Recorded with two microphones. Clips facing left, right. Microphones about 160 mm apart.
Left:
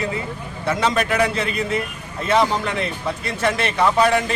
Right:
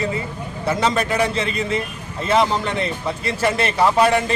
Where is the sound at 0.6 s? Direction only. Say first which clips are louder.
Right 1 dB; centre (ahead or behind).